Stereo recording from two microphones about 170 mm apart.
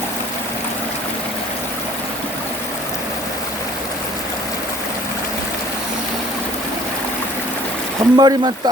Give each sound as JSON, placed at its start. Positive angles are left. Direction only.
{"t": 8.1, "sound": "speech", "side_deg": -25}